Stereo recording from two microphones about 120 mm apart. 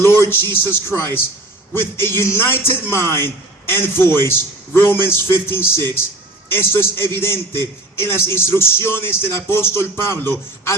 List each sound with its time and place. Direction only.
0.0 s speech: 20° left (ahead or behind)